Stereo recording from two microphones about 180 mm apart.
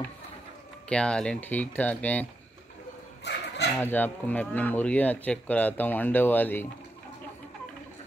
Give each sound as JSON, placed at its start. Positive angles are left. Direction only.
{"t": 0.8, "sound": "speech", "side_deg": 5}
{"t": 3.3, "sound": "a sound", "side_deg": 70}
{"t": 3.7, "sound": "speech", "side_deg": 10}